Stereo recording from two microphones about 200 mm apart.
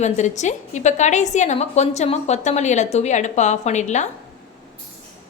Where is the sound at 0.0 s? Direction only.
35° left (ahead or behind).